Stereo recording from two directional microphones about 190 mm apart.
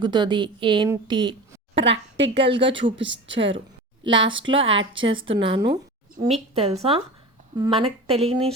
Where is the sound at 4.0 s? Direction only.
25° right (ahead or behind).